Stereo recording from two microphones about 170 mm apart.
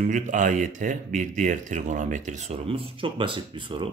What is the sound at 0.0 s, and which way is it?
Speech, 50° right (ahead or behind).